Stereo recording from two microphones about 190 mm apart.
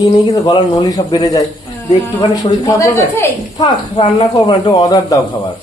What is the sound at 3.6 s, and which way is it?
Speech, 25° left (ahead or behind).